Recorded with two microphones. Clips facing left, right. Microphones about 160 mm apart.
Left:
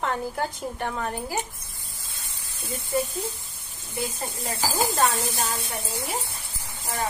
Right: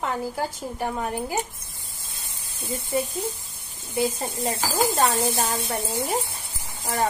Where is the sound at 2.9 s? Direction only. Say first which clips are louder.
Even; 20° right (ahead or behind).